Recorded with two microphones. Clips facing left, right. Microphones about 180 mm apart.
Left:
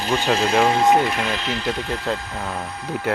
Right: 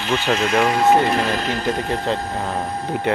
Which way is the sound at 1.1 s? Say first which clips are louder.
Right 4 dB; 40° right (ahead or behind).